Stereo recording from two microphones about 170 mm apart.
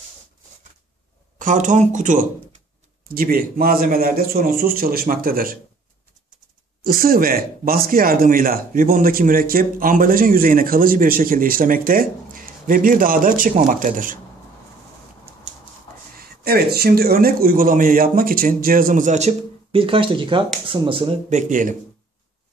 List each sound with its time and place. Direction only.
1.4 s speech: 50° right (ahead or behind)
3.1 s speech: 60° right (ahead or behind)
6.8 s speech: 60° right (ahead or behind)
16.2 s speech: 65° right (ahead or behind); by 21.1 s 30° right (ahead or behind)
21.3 s speech: 45° right (ahead or behind)